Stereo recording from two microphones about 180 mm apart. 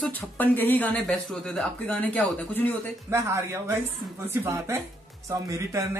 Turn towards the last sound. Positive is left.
turn(degrees=-15)  # may be behind; listen again after turning